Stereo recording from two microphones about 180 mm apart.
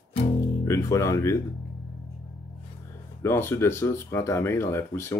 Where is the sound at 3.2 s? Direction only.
15° left (ahead or behind).